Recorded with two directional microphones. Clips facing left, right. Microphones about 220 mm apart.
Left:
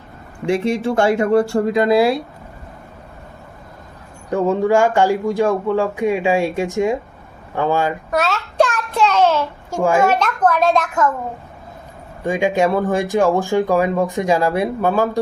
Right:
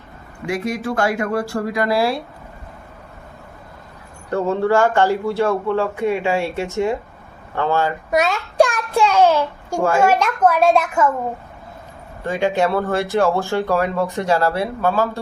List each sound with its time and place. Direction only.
0.4 s speech: 25° left (ahead or behind)
4.3 s speech: 15° left (ahead or behind)
8.1 s a sound: 15° right (ahead or behind)
10.0 s a child's voice: 10° right (ahead or behind)
12.2 s speech: 15° left (ahead or behind)